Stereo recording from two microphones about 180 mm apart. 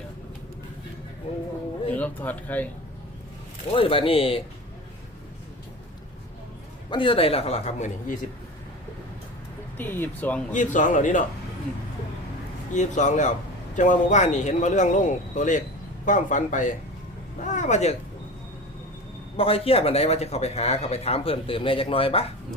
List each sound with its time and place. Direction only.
1.9 s speech: 10° left (ahead or behind)
3.7 s speech: 30° left (ahead or behind)
6.9 s speech: 30° left (ahead or behind)
9.7 s speech: 10° left (ahead or behind)
10.5 s speech: 45° left (ahead or behind)
12.7 s speech: 40° left (ahead or behind)
19.4 s speech: 30° left (ahead or behind)